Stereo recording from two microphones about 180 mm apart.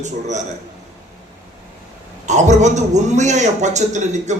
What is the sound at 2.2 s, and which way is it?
A man's voice, 40° right (ahead or behind).